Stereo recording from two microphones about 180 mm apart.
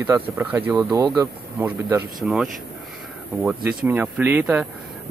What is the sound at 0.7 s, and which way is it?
Speech, 20° right (ahead or behind).